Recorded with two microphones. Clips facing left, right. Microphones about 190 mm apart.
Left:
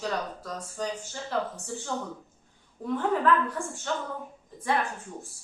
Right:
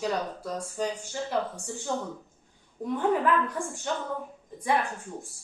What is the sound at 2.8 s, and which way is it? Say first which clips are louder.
Speech: right 1 dB; 15° right (ahead or behind).